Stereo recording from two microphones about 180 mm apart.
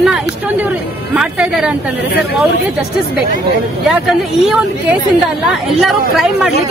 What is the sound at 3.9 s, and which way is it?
Speech, 5° right (ahead or behind).